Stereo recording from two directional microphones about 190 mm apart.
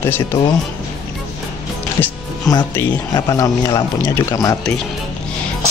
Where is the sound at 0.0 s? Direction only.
15° left (ahead or behind).